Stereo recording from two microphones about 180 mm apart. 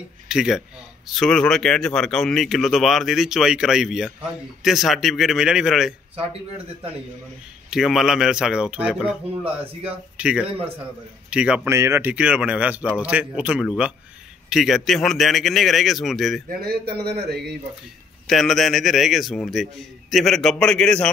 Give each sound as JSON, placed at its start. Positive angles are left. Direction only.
{"t": 0.3, "sound": "speech", "side_deg": -5}
{"t": 7.7, "sound": "speech", "side_deg": 0}
{"t": 9.4, "sound": "speech", "side_deg": -35}
{"t": 10.1, "sound": "a man's voice", "side_deg": -5}
{"t": 16.4, "sound": "a man's voice", "side_deg": -60}
{"t": 18.2, "sound": "speech", "side_deg": 0}